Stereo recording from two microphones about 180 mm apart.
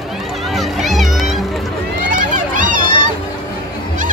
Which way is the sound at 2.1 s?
50° right (ahead or behind).